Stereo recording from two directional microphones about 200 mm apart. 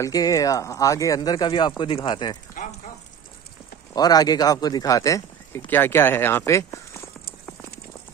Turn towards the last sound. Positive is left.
turn(degrees=15)  # may be behind; listen again after turning